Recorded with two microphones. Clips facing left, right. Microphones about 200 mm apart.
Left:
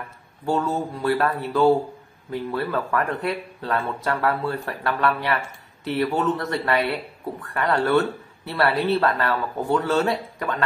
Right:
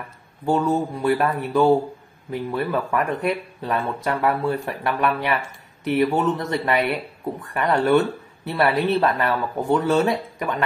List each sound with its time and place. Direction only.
0.5 s speech: 15° right (ahead or behind)